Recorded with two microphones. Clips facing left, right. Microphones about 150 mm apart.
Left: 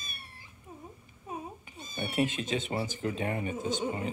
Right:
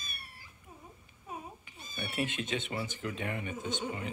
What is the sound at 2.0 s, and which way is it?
Speech, 40° left (ahead or behind).